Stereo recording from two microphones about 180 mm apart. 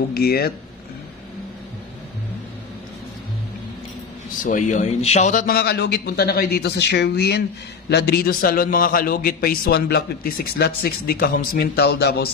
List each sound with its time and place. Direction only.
0.1 s a man's voice: 60° left (ahead or behind)
4.4 s a man's voice: 45° left (ahead or behind); by 12.3 s 60° left (ahead or behind)